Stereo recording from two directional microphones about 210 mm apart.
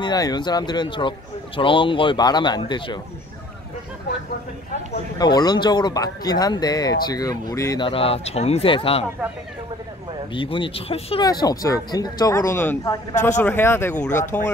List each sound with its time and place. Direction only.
0.0 s speech: 20° left (ahead or behind)
5.2 s speech: 20° left (ahead or behind)
10.3 s speech: 25° left (ahead or behind)